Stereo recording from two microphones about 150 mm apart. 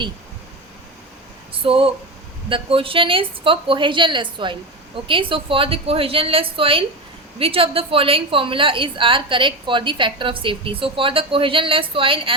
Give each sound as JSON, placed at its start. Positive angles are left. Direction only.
{"t": 1.6, "sound": "a woman's voice", "side_deg": -40}